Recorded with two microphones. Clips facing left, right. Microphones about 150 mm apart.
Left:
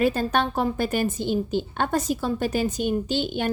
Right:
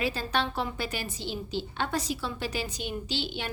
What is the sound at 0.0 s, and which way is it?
A woman's voice, 50° left (ahead or behind).